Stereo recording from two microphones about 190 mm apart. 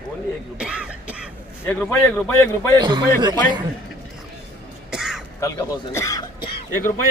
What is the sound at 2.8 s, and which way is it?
Speech, 25° right (ahead or behind).